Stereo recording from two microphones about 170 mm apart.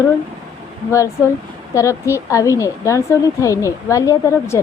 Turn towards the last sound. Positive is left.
turn(degrees=15)  # may be behind; listen again after turning